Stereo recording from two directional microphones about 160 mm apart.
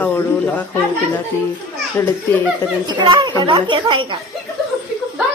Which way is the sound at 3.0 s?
30° right (ahead or behind).